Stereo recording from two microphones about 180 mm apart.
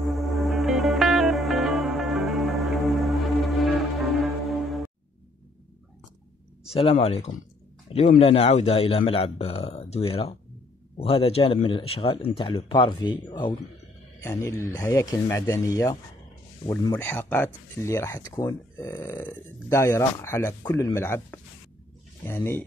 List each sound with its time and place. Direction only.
0.0 s music: centre (ahead or behind)
6.7 s a man's voice: 35° left (ahead or behind); by 22.6 s 15° left (ahead or behind)